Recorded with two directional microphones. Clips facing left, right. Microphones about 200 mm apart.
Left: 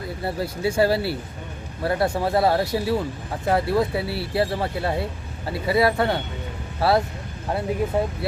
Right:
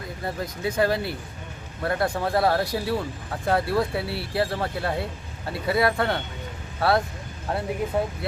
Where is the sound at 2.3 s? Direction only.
25° left (ahead or behind).